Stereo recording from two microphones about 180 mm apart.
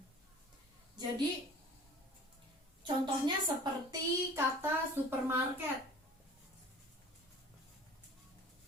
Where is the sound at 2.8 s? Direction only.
25° right (ahead or behind).